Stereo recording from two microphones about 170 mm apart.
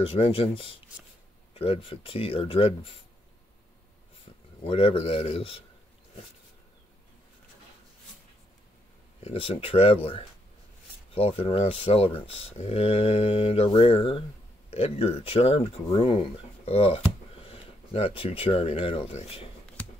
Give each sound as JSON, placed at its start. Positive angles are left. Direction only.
{"t": 0.0, "sound": "speech", "side_deg": 35}
{"t": 4.6, "sound": "speech", "side_deg": 35}
{"t": 9.2, "sound": "speech", "side_deg": 35}
{"t": 11.1, "sound": "speech", "side_deg": 35}